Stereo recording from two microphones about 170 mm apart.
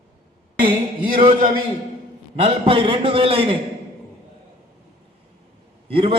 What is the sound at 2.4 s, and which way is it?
A man's voice, 35° right (ahead or behind).